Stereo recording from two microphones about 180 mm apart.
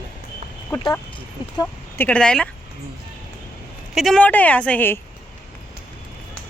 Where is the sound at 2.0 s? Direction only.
5° left (ahead or behind).